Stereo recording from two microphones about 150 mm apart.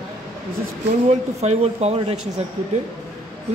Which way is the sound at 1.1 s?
45° right (ahead or behind).